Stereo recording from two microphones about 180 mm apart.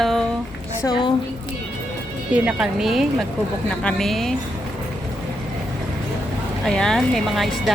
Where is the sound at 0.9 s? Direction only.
25° left (ahead or behind).